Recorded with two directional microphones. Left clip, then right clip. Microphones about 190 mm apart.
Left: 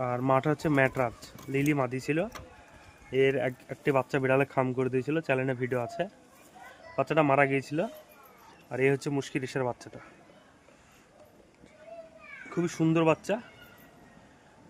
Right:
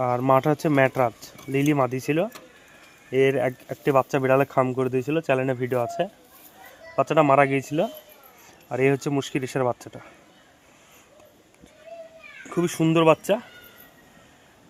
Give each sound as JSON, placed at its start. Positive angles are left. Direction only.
{"t": 0.0, "sound": "speech", "side_deg": -30}
{"t": 12.5, "sound": "speech", "side_deg": -40}